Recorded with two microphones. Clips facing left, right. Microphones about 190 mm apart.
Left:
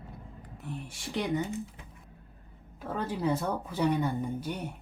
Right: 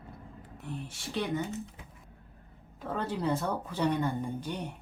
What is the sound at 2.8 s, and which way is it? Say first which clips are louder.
Speech: left 1 dB; 10° left (ahead or behind).